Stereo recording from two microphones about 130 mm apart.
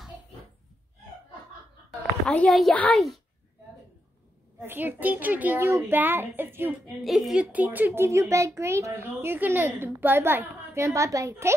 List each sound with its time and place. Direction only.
1.9 s a sound: 5° left (ahead or behind)
4.6 s a child's voice: 15° right (ahead or behind)
7.0 s a child's voice: centre (ahead or behind); by 11.5 s 20° right (ahead or behind)